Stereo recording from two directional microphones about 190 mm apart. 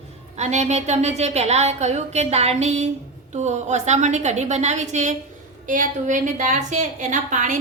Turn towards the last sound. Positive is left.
turn(degrees=-40)  # may be behind; listen again after turning